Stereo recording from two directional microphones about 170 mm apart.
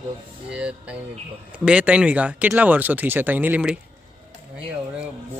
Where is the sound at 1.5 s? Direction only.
5° right (ahead or behind).